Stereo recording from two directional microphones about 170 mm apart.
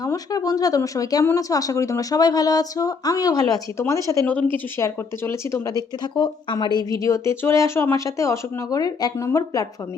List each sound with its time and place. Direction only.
0.0 s speech: 20° left (ahead or behind)